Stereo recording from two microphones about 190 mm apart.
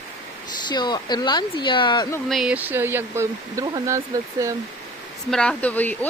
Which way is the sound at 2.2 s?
Centre (ahead or behind).